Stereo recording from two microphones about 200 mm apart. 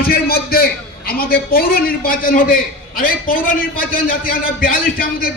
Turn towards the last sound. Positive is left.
turn(degrees=45)  # may be behind; listen again after turning